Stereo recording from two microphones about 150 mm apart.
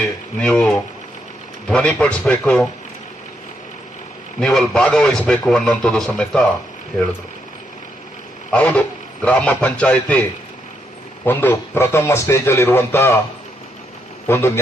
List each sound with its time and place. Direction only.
0.3 s a man's voice: 5° left (ahead or behind)
4.4 s a man's voice: 5° left (ahead or behind)
8.5 s a man's voice: 10° left (ahead or behind)
11.3 s a man's voice: 15° left (ahead or behind)
14.3 s a man's voice: 15° left (ahead or behind)